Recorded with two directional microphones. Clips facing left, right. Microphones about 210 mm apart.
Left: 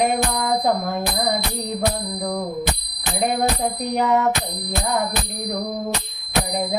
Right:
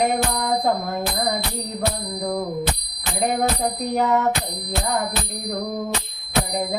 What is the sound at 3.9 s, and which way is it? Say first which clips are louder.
Bicycle bell: left 1 dB; centre (ahead or behind).